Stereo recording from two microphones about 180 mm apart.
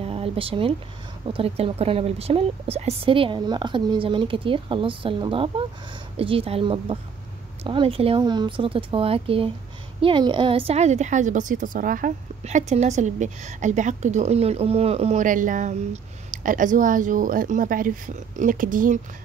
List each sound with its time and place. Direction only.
0.0 s a woman's voice: 30° right (ahead or behind); by 18.9 s 50° right (ahead or behind)